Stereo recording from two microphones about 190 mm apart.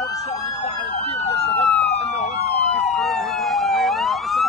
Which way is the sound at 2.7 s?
Centre (ahead or behind).